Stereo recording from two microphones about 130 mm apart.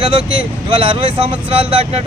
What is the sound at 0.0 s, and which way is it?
Speech, 40° right (ahead or behind).